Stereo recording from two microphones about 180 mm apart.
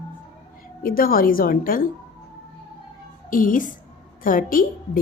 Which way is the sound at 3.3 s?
50° left (ahead or behind).